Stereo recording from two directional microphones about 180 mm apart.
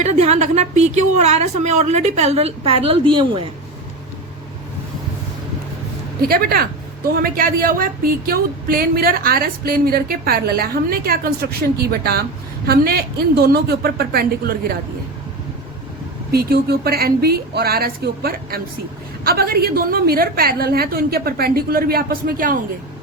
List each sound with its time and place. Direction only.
0.0 s a woman's voice: 40° right (ahead or behind)
6.2 s a woman's voice: 55° right (ahead or behind)
16.3 s a woman's voice: 60° right (ahead or behind)